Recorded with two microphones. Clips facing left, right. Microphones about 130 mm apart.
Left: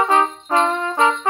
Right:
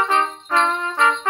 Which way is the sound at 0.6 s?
45° left (ahead or behind).